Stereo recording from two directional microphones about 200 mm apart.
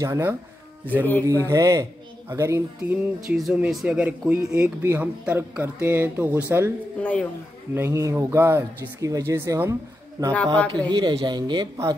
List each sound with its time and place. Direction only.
0.0 s speech: 15° right (ahead or behind)
1.4 s speech: 15° right (ahead or behind)
7.0 s speech: 5° left (ahead or behind)
7.7 s speech: 15° right (ahead or behind)
10.3 s speech: 5° left (ahead or behind)
10.9 s speech: 20° right (ahead or behind)